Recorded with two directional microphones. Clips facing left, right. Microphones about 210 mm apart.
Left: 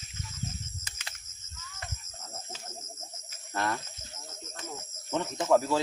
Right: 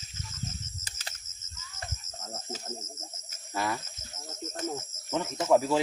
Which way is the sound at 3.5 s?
5° right (ahead or behind).